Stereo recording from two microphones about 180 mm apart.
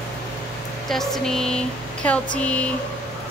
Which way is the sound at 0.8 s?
Centre (ahead or behind).